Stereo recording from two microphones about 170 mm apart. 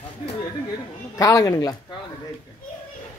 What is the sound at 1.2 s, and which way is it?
Speech, 20° left (ahead or behind).